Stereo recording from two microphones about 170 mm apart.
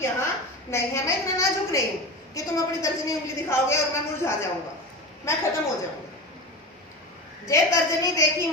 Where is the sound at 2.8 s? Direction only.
15° left (ahead or behind).